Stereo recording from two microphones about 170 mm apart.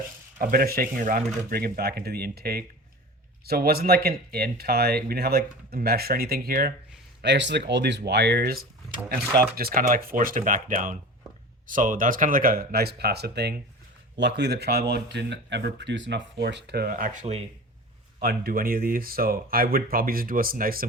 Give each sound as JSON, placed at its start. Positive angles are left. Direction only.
{"t": 0.3, "sound": "speech", "side_deg": -60}
{"t": 7.2, "sound": "speech", "side_deg": -90}
{"t": 9.6, "sound": "speech", "side_deg": -65}
{"t": 14.2, "sound": "speech", "side_deg": -85}
{"t": 18.2, "sound": "speech", "side_deg": -65}